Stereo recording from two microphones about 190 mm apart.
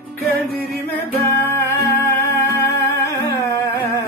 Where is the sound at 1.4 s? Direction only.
10° left (ahead or behind).